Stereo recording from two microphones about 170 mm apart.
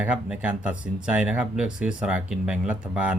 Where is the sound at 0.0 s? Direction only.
5° right (ahead or behind).